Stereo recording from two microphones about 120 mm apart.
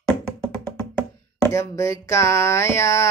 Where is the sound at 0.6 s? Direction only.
10° left (ahead or behind).